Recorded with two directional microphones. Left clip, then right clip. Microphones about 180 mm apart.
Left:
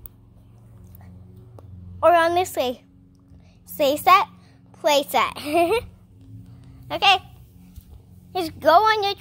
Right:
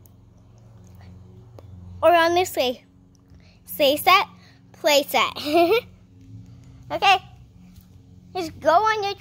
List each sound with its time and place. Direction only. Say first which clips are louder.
1.6 s a woman's voice: left 1 dB; 10° right (ahead or behind)
6.9 s a sound: even; 5° left (ahead or behind)
8.3 s speech: left 2 dB; 15° left (ahead or behind)